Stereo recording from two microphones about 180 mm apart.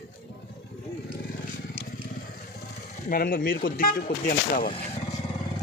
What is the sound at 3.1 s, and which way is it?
Speech, 55° left (ahead or behind).